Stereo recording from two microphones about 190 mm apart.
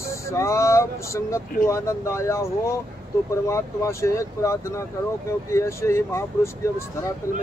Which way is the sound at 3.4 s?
15° left (ahead or behind).